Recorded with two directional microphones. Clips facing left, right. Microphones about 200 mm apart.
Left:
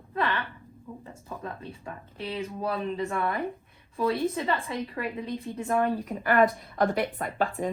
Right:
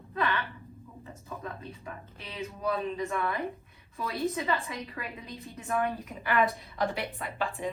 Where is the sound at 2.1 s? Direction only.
30° left (ahead or behind).